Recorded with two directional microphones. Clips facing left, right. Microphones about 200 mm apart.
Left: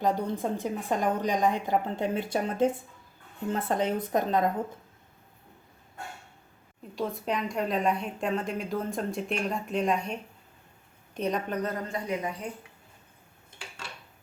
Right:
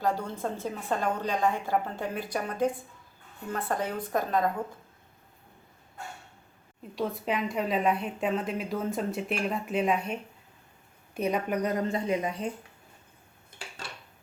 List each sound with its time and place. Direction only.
0.0 s a woman's voice: 20° left (ahead or behind)
6.9 s a woman's voice: centre (ahead or behind); by 12.5 s 20° right (ahead or behind)